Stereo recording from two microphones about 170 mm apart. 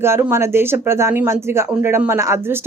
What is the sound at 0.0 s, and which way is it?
Speech, 15° right (ahead or behind).